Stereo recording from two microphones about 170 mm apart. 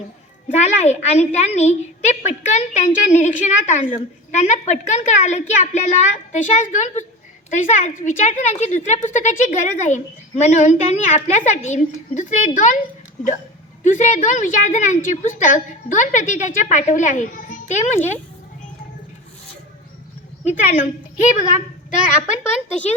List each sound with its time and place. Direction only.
0.4 s a woman's voice: 45° left (ahead or behind)
13.8 s a woman's voice: 45° left (ahead or behind)
20.4 s a woman's voice: 40° left (ahead or behind)